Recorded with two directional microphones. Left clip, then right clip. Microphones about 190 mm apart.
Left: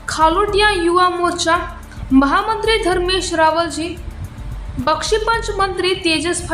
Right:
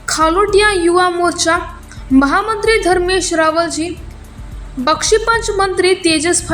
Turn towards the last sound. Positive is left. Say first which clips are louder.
# right 4 dB
turn(degrees=-15)  # may be behind; listen again after turning